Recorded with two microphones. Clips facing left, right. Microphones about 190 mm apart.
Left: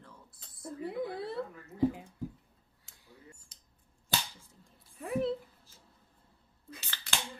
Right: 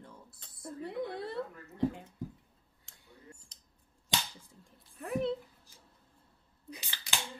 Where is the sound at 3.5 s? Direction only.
5° left (ahead or behind).